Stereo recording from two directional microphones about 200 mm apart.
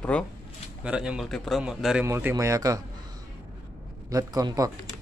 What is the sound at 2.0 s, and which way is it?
Speech, 15° right (ahead or behind).